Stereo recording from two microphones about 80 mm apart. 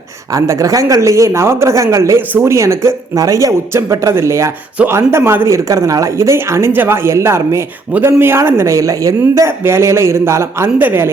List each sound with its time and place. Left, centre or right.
0.3 s speech: right
5.5 s speech: right